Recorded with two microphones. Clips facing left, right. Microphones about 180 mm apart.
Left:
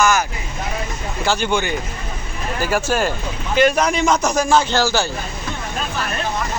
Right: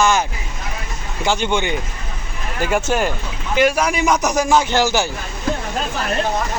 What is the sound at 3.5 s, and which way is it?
Speech, 10° right (ahead or behind).